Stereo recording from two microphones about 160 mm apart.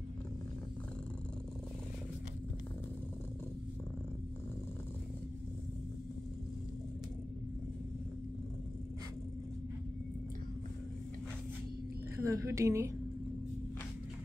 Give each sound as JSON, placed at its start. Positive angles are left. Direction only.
{"t": 12.2, "sound": "a woman's voice", "side_deg": -20}